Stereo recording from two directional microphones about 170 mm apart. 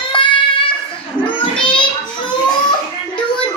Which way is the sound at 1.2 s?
30° left (ahead or behind).